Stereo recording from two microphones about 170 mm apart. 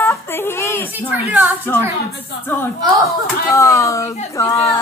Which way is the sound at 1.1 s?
10° right (ahead or behind).